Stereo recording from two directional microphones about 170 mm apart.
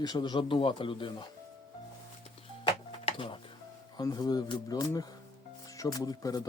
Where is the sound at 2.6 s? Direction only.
30° left (ahead or behind).